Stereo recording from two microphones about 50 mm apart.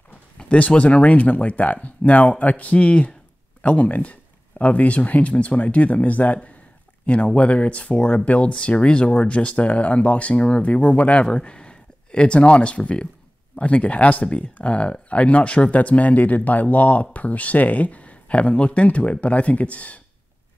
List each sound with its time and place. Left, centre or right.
0.4 s speech: left